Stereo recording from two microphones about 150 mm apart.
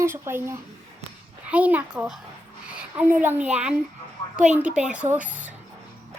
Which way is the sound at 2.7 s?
10° right (ahead or behind).